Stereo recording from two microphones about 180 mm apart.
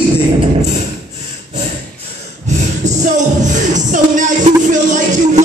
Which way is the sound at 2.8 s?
40° right (ahead or behind).